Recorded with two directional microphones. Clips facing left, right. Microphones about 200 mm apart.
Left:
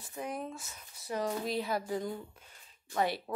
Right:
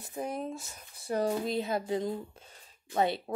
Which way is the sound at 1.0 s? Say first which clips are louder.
Right 4 dB; 30° right (ahead or behind).